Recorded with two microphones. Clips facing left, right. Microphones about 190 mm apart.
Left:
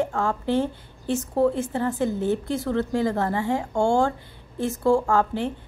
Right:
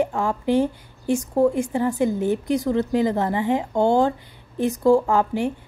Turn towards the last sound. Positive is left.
turn(degrees=-15)  # may be behind; listen again after turning